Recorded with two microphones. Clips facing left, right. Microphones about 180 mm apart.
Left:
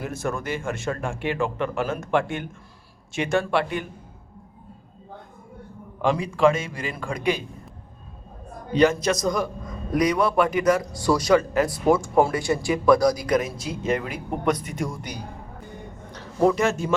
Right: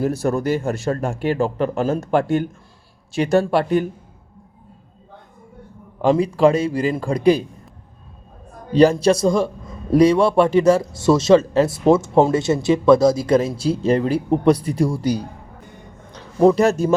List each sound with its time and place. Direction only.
0.0 s speech: 35° right (ahead or behind)
6.0 s speech: 35° right (ahead or behind)
8.7 s a man's voice: 35° right (ahead or behind)
16.1 s a sound: 20° right (ahead or behind)
16.6 s speech: 40° right (ahead or behind)